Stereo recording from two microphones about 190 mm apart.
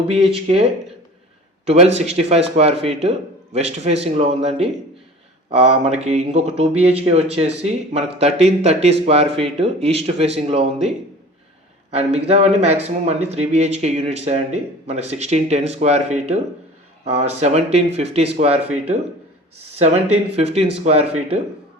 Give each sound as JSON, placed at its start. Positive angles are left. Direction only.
{"t": 0.1, "sound": "speech", "side_deg": -30}
{"t": 1.6, "sound": "speech", "side_deg": -35}
{"t": 19.8, "sound": "speech", "side_deg": -35}